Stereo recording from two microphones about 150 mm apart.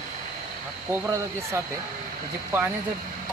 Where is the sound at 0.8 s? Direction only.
20° right (ahead or behind).